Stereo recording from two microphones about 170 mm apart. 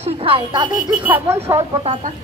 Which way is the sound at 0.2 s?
30° right (ahead or behind).